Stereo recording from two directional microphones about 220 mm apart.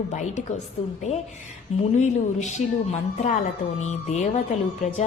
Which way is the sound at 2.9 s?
30° left (ahead or behind).